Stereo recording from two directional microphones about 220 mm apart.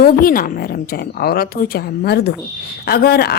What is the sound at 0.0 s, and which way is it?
A woman's voice, 40° left (ahead or behind).